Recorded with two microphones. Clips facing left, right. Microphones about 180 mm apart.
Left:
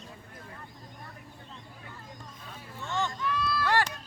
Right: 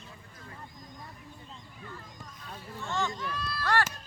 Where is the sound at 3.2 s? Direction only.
40° right (ahead or behind).